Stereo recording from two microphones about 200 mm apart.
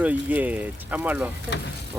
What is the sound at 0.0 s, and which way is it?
Speech, 10° right (ahead or behind).